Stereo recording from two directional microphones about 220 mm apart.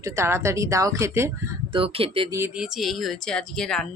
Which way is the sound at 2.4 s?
5° right (ahead or behind).